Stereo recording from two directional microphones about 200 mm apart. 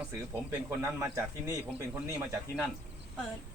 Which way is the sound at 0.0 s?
5° right (ahead or behind).